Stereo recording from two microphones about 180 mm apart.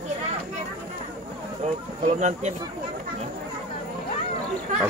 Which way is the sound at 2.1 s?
40° right (ahead or behind).